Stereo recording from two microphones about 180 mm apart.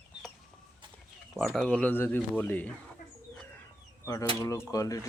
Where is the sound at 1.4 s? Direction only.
5° left (ahead or behind).